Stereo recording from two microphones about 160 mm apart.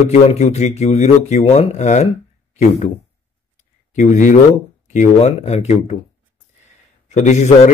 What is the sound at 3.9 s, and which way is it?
A man's voice, 50° left (ahead or behind).